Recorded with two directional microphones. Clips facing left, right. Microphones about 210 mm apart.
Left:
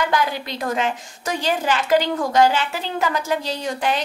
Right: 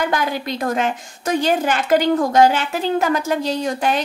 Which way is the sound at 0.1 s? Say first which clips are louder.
Right 1 dB; 50° right (ahead or behind).